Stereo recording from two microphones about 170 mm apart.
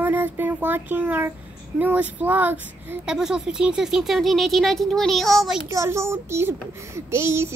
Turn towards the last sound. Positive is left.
turn(degrees=-15)  # may be behind; listen again after turning